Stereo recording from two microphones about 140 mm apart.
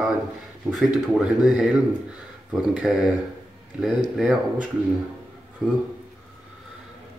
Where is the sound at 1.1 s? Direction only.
Centre (ahead or behind).